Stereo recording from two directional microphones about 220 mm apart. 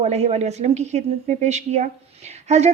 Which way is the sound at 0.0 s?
30° right (ahead or behind).